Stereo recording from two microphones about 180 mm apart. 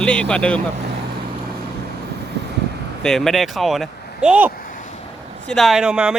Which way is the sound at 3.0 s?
Centre (ahead or behind).